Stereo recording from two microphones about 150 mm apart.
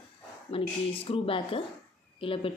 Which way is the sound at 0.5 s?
35° left (ahead or behind).